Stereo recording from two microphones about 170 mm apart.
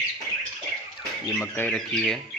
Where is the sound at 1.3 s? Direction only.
10° left (ahead or behind).